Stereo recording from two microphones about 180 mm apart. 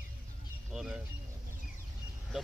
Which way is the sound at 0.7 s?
5° right (ahead or behind).